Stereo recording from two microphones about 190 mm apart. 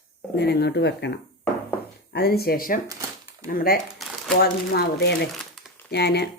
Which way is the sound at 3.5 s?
50° left (ahead or behind).